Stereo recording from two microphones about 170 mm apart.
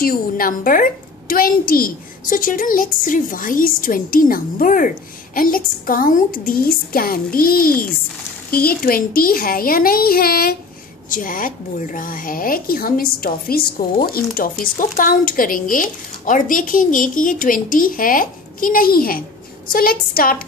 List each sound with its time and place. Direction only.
0.0 s a woman's voice: 60° left (ahead or behind)